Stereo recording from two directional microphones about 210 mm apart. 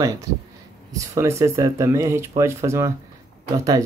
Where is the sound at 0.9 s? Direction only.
15° right (ahead or behind).